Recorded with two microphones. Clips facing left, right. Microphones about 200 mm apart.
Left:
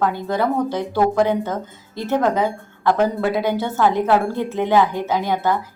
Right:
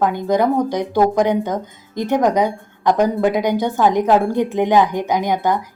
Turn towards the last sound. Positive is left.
turn(degrees=-15)  # may be behind; listen again after turning